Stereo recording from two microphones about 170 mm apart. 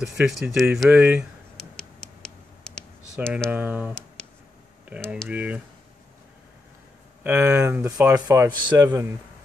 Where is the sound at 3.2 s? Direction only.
10° right (ahead or behind).